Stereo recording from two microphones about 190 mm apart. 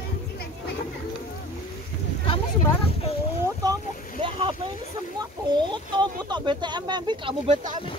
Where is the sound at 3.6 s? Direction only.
20° right (ahead or behind).